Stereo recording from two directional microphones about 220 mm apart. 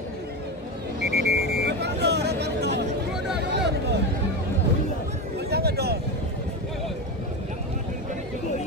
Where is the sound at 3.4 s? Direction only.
50° right (ahead or behind).